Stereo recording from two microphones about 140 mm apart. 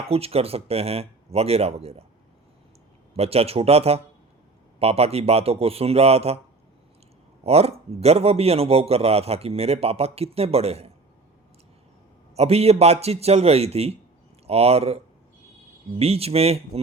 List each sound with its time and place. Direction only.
0.1 s a man's voice: 45° right (ahead or behind)
3.2 s a man's voice: 45° right (ahead or behind)
7.4 s a man's voice: 45° right (ahead or behind)
12.4 s a man's voice: 45° right (ahead or behind)